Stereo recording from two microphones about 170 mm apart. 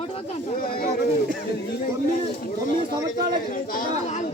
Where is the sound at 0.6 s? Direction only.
60° left (ahead or behind).